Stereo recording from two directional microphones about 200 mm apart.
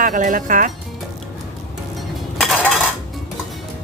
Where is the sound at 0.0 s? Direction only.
40° right (ahead or behind).